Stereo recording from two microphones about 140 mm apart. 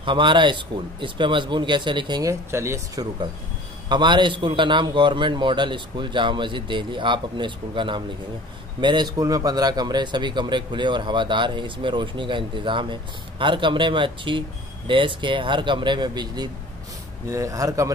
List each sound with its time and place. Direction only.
0.0 s speech: 35° right (ahead or behind)
2.5 s speech: 20° right (ahead or behind)
3.9 s speech: 35° right (ahead or behind)